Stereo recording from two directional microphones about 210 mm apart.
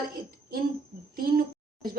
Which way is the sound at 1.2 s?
45° right (ahead or behind).